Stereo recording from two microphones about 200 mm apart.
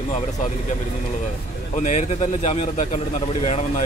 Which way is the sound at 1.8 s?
35° left (ahead or behind).